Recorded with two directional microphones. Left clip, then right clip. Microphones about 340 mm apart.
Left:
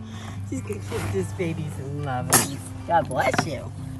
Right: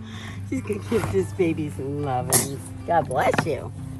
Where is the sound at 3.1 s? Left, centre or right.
Centre.